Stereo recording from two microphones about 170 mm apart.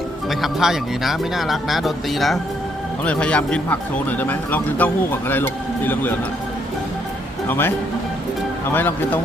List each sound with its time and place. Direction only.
0.3 s speech: centre (ahead or behind)
7.4 s speech: 10° left (ahead or behind)